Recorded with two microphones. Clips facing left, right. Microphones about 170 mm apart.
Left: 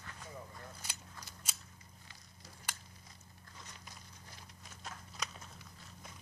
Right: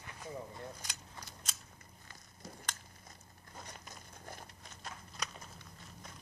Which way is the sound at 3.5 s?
50° right (ahead or behind).